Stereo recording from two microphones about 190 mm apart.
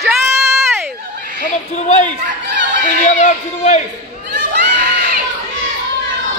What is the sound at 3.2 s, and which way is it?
Speech, 35° left (ahead or behind).